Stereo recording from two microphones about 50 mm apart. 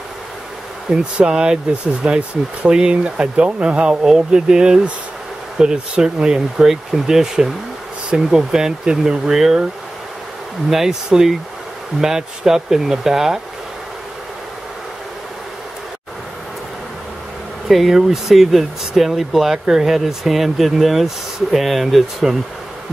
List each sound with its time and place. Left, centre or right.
1.1 s speech: centre
10.7 s speech: centre
17.6 s speech: centre